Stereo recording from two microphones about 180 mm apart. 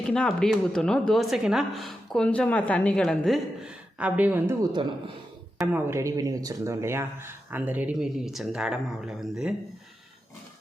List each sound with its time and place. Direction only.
0.0 s a woman's voice: 5° left (ahead or behind)
4.7 s speech: 30° right (ahead or behind)
5.5 s speech: 15° right (ahead or behind)